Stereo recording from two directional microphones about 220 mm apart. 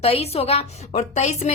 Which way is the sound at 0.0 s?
30° left (ahead or behind).